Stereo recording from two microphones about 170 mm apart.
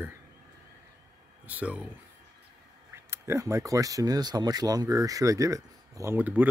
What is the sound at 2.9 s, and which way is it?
Speech, 15° right (ahead or behind).